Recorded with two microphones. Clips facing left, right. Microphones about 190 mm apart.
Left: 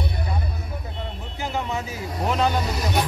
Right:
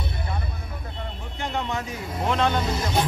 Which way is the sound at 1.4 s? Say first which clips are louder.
Left 1 dB; 5° left (ahead or behind).